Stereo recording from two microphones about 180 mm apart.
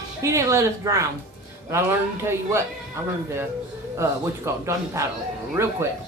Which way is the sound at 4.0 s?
15° right (ahead or behind).